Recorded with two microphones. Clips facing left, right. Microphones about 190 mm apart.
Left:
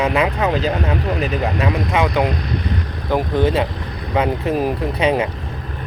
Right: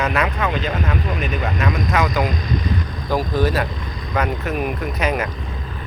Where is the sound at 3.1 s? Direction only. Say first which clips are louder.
Left 2 dB; 25° left (ahead or behind).